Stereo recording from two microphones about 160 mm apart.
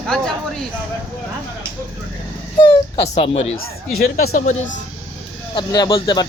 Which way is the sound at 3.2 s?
35° left (ahead or behind).